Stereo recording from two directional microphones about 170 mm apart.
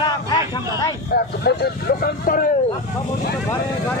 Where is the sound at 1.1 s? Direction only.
70° left (ahead or behind).